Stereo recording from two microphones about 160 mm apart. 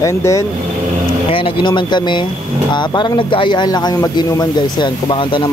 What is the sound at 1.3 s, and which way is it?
Speech, 30° left (ahead or behind).